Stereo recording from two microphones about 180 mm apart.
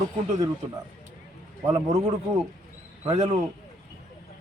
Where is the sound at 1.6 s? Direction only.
20° right (ahead or behind).